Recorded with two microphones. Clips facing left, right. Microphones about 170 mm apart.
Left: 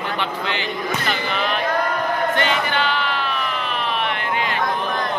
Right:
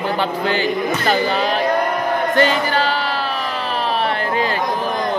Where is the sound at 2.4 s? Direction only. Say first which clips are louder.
Right 5 dB; 35° right (ahead or behind).